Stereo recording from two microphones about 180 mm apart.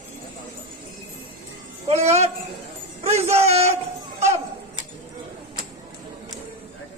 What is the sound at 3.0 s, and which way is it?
Music, 35° right (ahead or behind).